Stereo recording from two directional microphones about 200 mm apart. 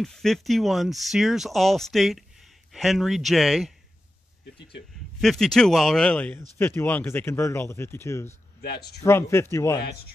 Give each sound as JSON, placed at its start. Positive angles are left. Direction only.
{"t": 0.0, "sound": "speech", "side_deg": 0}
{"t": 5.2, "sound": "speech", "side_deg": 0}
{"t": 8.6, "sound": "speech", "side_deg": 50}
{"t": 9.0, "sound": "speech", "side_deg": 15}